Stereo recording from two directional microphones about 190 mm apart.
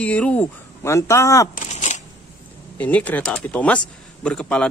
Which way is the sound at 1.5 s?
40° left (ahead or behind).